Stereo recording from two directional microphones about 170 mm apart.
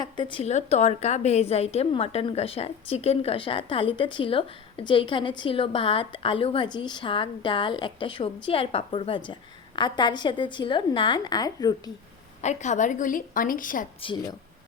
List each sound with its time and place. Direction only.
0.0 s a woman's voice: 30° left (ahead or behind)
12.4 s a woman's voice: 45° left (ahead or behind)
14.0 s speech: 30° left (ahead or behind)